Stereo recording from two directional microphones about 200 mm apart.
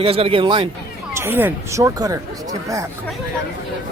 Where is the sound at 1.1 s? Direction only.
10° right (ahead or behind).